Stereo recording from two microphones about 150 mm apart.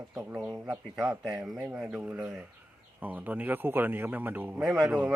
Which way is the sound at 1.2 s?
25° right (ahead or behind).